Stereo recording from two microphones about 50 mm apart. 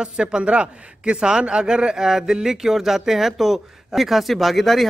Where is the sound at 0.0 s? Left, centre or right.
Centre.